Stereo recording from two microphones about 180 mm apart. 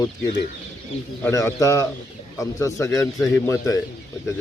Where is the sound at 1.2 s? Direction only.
15° left (ahead or behind).